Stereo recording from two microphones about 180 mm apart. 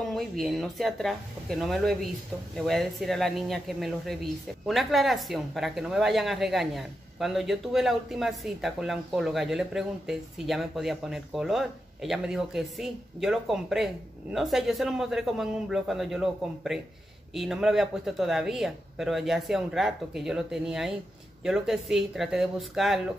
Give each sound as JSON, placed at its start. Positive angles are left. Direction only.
{"t": 0.1, "sound": "speech", "side_deg": 0}